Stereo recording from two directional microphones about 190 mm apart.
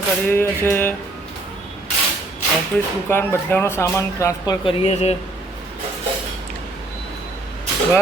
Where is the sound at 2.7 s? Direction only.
5° left (ahead or behind).